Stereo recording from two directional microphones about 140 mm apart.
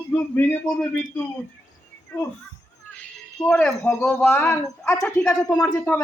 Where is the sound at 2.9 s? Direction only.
10° left (ahead or behind).